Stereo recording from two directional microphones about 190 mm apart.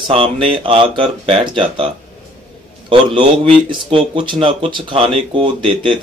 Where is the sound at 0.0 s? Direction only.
30° right (ahead or behind).